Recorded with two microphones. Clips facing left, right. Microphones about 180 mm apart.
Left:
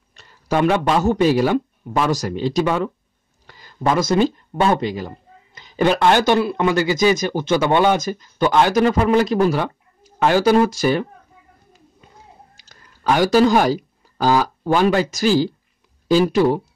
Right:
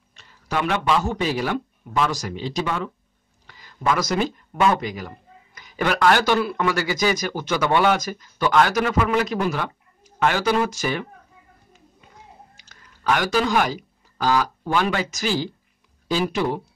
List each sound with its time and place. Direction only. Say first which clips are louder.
0.1 s a man's voice: left 6 dB; 40° left (ahead or behind)
12.6 s speech: left 3 dB; 35° left (ahead or behind)